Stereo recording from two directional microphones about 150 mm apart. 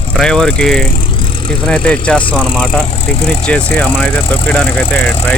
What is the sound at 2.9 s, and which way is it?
Speech, 40° left (ahead or behind).